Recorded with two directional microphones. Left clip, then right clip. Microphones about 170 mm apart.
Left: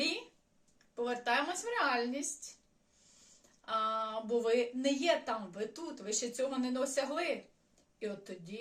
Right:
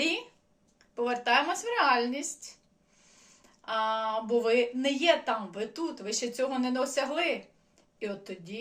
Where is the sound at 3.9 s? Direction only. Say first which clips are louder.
Right 6 dB; 20° left (ahead or behind).